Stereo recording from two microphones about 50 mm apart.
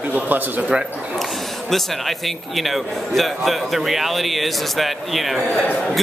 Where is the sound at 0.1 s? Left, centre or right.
Right.